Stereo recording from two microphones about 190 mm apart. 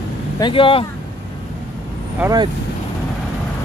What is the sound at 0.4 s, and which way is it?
Speech, 25° left (ahead or behind).